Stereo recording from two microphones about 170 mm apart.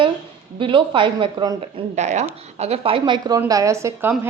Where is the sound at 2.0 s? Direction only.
45° right (ahead or behind).